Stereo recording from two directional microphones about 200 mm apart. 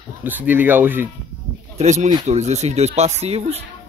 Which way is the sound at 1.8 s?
35° right (ahead or behind).